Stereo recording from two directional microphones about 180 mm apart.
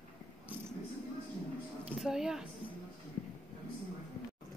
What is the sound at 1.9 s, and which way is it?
Speech, 5° right (ahead or behind).